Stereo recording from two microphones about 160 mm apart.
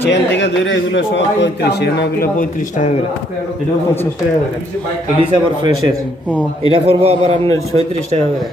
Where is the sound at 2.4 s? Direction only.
55° left (ahead or behind).